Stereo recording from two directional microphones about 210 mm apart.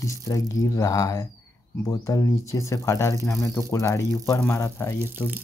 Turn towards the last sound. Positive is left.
turn(degrees=-10)  # may be behind; listen again after turning